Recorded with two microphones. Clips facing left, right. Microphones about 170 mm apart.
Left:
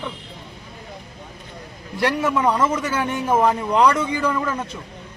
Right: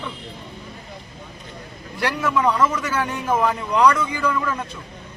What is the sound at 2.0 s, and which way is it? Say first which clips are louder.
A man's voice: left 2 dB; 25° left (ahead or behind).